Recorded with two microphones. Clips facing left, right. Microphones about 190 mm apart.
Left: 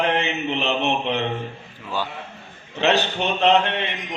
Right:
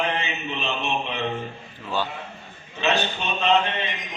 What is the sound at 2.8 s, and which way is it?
Speech, 70° left (ahead or behind).